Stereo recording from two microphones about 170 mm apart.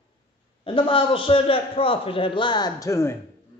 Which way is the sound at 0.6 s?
30° left (ahead or behind).